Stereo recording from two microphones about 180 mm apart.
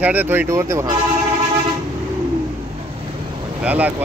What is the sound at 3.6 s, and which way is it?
Speech, 10° right (ahead or behind).